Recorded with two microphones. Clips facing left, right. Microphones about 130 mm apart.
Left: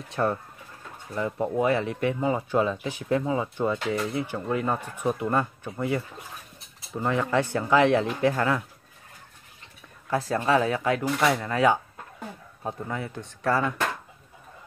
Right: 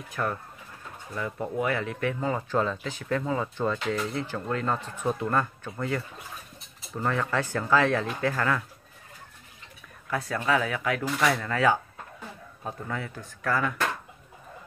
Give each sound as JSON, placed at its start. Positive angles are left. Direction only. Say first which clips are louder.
{"t": 0.1, "sound": "speech", "louder": "left 5 dB", "side_deg": 25}
{"t": 10.0, "sound": "speech", "louder": "left 3 dB", "side_deg": 30}